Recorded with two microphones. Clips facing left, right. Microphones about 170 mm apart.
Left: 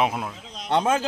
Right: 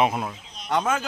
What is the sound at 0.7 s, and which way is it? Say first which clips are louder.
Speech: left 3 dB; 30° left (ahead or behind).